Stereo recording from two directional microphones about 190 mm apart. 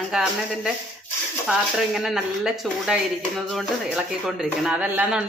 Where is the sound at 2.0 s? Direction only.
Centre (ahead or behind).